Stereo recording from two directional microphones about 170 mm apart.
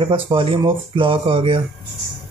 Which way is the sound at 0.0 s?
30° right (ahead or behind).